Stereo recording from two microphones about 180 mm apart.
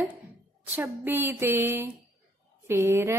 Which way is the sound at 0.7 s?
10° right (ahead or behind).